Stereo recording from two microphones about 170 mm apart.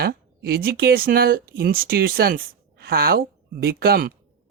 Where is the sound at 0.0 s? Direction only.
65° right (ahead or behind).